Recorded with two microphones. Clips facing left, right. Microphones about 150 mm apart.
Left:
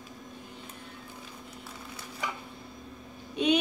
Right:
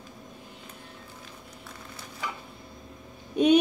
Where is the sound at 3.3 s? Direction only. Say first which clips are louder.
Right 6 dB; 45° right (ahead or behind).